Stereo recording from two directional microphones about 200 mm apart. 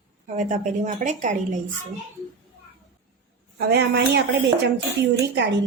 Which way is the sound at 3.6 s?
55° right (ahead or behind).